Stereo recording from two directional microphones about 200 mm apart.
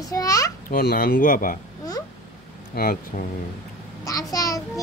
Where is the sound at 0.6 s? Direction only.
45° left (ahead or behind).